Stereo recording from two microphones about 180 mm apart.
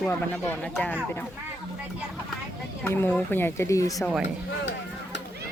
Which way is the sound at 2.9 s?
10° left (ahead or behind).